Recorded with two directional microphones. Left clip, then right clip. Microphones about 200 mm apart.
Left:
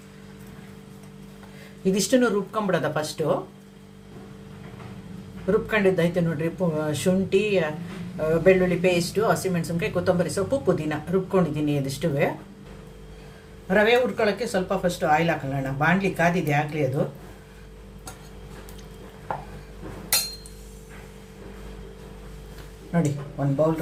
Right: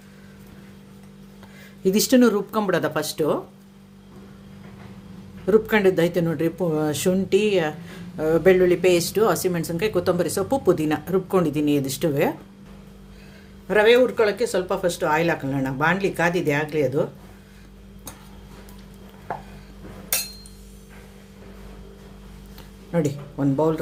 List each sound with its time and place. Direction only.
1.8 s speech: 50° right (ahead or behind)
5.5 s speech: 55° right (ahead or behind)
13.7 s speech: 60° right (ahead or behind)
22.9 s speech: 55° right (ahead or behind)